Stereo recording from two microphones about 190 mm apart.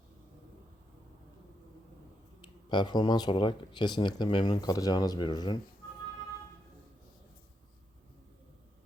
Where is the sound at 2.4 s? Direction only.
25° left (ahead or behind).